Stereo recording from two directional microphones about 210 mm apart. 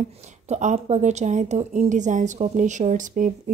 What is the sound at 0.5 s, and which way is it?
A woman's voice, 35° right (ahead or behind).